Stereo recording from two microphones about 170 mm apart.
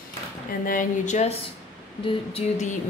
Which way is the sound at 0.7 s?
50° left (ahead or behind).